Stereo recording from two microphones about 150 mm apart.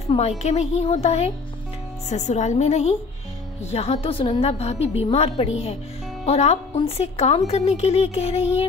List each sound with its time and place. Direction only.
0.4 s speech: 50° left (ahead or behind)